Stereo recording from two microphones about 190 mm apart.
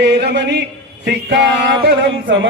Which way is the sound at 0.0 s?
65° right (ahead or behind).